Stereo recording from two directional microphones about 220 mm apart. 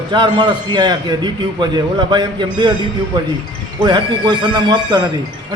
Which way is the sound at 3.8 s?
20° right (ahead or behind).